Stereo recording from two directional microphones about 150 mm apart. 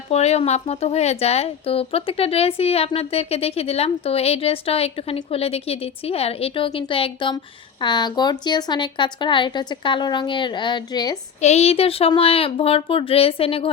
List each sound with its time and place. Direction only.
0.1 s speech: 45° left (ahead or behind); by 11.2 s 25° left (ahead or behind)
11.3 s speech: 50° left (ahead or behind)